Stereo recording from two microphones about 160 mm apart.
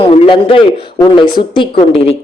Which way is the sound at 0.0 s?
35° left (ahead or behind).